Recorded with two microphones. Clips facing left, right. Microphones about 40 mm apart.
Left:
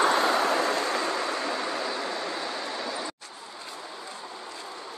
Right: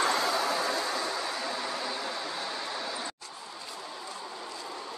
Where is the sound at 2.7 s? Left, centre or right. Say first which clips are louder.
Left 3 dB; centre.